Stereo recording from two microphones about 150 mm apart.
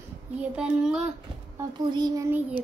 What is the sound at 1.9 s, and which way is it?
Speech, 25° right (ahead or behind).